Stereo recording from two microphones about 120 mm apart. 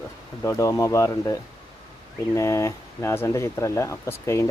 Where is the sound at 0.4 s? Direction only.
25° left (ahead or behind).